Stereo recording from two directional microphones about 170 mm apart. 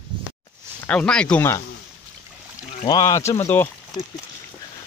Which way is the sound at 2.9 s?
20° left (ahead or behind).